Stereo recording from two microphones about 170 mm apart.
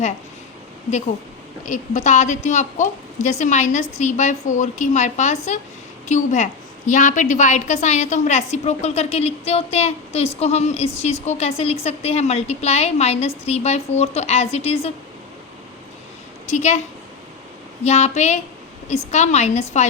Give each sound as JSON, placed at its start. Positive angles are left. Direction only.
{"t": 1.6, "sound": "a woman's voice", "side_deg": 45}
{"t": 16.5, "sound": "a woman's voice", "side_deg": 45}
{"t": 17.8, "sound": "a woman's voice", "side_deg": 40}